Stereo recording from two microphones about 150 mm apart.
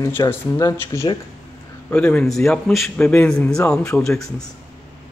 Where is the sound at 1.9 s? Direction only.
10° left (ahead or behind).